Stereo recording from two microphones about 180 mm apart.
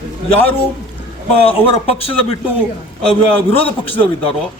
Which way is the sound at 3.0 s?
30° left (ahead or behind).